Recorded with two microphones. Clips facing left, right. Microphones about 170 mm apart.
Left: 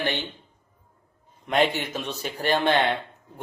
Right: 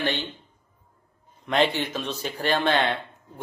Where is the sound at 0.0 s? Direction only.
15° left (ahead or behind).